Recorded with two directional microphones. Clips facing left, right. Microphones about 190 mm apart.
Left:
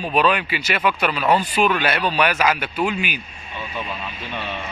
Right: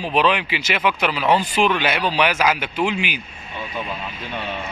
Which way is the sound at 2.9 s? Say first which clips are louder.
Right 1 dB; 90° right.